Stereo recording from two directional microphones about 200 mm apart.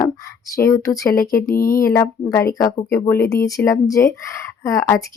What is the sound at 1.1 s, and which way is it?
Speech, 45° left (ahead or behind).